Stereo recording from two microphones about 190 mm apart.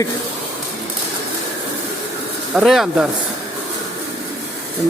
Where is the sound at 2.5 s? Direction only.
Centre (ahead or behind).